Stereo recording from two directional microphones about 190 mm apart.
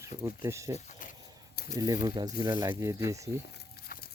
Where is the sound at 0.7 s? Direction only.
40° left (ahead or behind).